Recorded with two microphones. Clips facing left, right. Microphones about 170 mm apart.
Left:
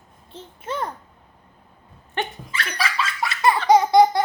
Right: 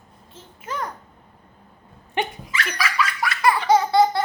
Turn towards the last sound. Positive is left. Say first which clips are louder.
# left 3 dB
turn(degrees=15)  # may be behind; listen again after turning